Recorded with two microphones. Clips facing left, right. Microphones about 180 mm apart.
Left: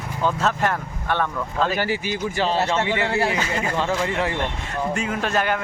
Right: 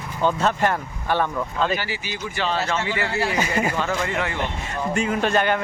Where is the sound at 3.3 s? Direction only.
10° right (ahead or behind).